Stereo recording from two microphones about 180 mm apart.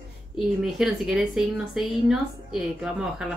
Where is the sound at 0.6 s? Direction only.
5° right (ahead or behind).